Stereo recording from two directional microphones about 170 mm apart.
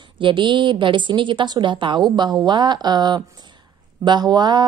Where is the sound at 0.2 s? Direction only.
30° right (ahead or behind).